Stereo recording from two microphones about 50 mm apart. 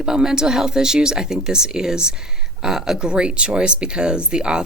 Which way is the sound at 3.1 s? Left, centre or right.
Right.